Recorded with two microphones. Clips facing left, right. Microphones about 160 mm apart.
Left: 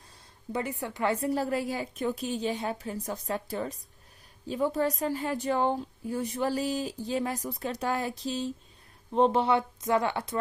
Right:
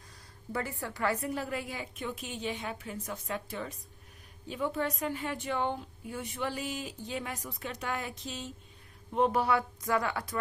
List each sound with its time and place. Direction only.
0.5 s a woman's voice: 20° left (ahead or behind)